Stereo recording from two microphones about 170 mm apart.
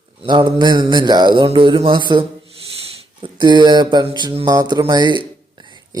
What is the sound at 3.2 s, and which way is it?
Speech, 30° right (ahead or behind).